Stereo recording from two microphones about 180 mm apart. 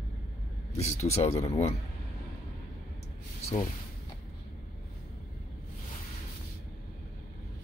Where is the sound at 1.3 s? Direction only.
20° left (ahead or behind).